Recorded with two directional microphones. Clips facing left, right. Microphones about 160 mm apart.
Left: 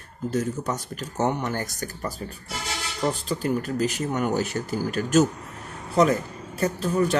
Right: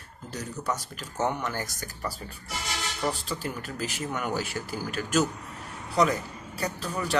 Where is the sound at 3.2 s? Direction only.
45° left (ahead or behind).